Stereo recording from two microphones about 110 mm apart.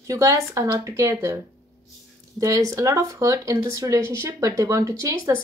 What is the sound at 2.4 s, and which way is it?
Speech, 30° right (ahead or behind).